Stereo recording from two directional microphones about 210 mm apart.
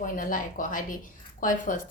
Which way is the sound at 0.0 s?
40° left (ahead or behind).